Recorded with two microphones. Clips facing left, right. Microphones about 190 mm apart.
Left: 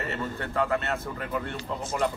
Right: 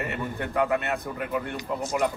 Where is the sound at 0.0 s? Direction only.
15° right (ahead or behind).